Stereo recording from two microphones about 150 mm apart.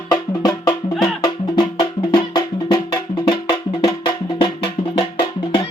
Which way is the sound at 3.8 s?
30° left (ahead or behind).